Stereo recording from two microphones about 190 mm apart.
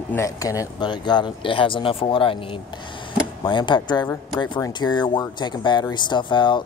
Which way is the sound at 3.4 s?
25° left (ahead or behind).